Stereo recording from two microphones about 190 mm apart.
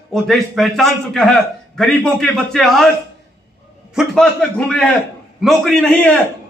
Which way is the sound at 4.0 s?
5° right (ahead or behind).